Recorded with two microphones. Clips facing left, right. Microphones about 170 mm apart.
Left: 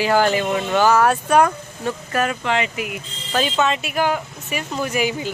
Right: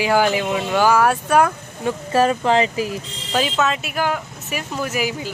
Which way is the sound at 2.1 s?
30° right (ahead or behind).